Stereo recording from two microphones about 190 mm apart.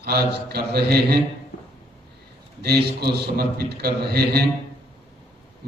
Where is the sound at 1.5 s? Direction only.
45° left (ahead or behind).